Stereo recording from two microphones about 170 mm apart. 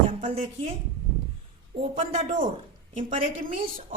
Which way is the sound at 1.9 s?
50° right (ahead or behind).